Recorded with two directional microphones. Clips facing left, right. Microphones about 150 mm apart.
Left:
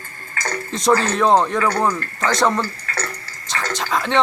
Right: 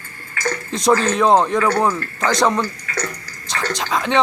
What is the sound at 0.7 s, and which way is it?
Speech, centre (ahead or behind).